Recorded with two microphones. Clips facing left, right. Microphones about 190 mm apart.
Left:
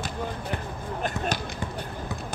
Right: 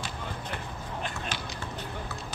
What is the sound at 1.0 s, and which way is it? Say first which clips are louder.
Basketball bounce: left 9 dB; 45° left (ahead or behind).